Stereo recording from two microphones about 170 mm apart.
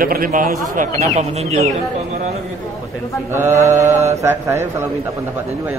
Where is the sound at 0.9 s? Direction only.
40° right (ahead or behind).